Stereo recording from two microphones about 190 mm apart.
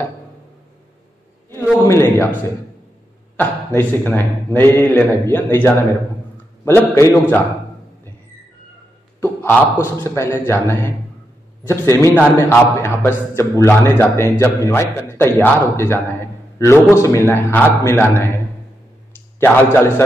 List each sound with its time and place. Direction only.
1.9 s a man's voice: 15° left (ahead or behind)
3.3 s a man's voice: 10° left (ahead or behind)
9.2 s a sound: 10° left (ahead or behind)
10.1 s a man's voice: 15° left (ahead or behind)
19.4 s a man's voice: 10° left (ahead or behind)